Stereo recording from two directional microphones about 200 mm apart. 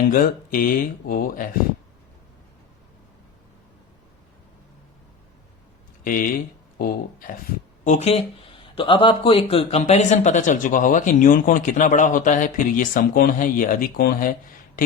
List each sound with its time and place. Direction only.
0.1 s speech: 45° left (ahead or behind)
6.7 s speech: 45° left (ahead or behind)
7.9 s speech: 30° left (ahead or behind)